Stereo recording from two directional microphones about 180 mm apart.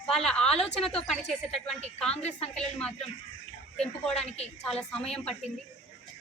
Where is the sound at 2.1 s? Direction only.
35° left (ahead or behind).